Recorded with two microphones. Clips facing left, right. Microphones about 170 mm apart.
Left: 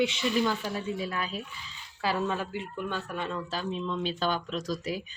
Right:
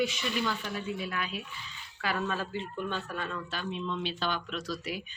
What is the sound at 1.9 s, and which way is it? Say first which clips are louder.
Speech: left 3 dB; 25° left (ahead or behind).